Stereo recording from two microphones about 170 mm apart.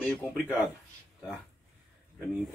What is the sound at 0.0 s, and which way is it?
Speech, 10° left (ahead or behind).